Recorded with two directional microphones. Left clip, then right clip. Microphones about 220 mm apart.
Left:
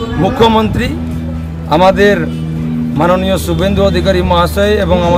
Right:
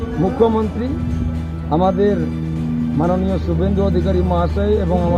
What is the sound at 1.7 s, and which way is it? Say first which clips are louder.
A man's voice: left 8 dB; 25° left (ahead or behind).